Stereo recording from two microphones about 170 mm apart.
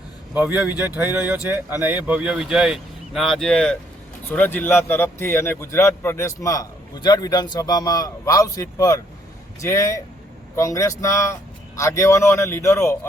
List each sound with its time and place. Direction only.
0.3 s a man's voice: 10° right (ahead or behind); by 13.1 s 15° left (ahead or behind)